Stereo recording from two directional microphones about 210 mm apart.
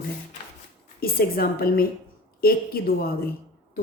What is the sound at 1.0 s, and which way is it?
Speech, 45° left (ahead or behind).